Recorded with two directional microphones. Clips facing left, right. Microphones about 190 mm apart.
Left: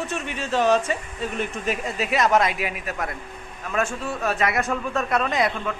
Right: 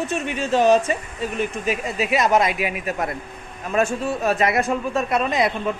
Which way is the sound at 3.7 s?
30° right (ahead or behind).